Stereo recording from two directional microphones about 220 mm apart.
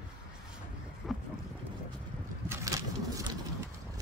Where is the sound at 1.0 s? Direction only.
Centre (ahead or behind).